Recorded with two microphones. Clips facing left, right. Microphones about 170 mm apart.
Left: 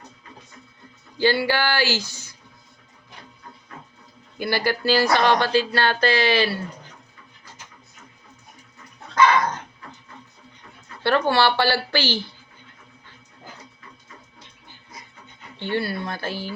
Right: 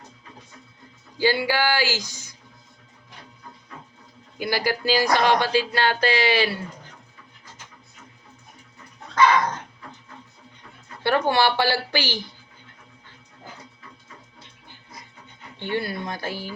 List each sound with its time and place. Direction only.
1.2 s speech: 10° right (ahead or behind)
4.4 s speech: 10° right (ahead or behind)
11.0 s speech: 15° right (ahead or behind)
15.5 s speech: 15° right (ahead or behind)